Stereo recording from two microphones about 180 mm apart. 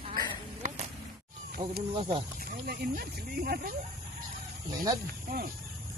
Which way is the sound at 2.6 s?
55° right (ahead or behind).